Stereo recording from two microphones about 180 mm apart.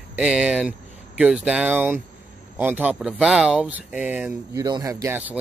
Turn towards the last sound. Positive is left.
turn(degrees=-10)  # may be behind; listen again after turning